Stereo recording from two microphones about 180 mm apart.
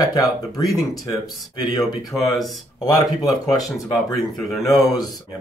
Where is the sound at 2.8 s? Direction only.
20° left (ahead or behind).